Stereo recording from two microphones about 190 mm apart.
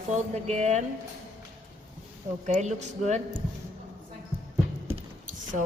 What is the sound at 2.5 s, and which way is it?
Speech, 40° right (ahead or behind).